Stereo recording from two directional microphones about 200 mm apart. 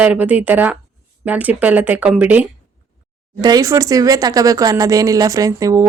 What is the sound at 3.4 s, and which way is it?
Speech, 20° right (ahead or behind).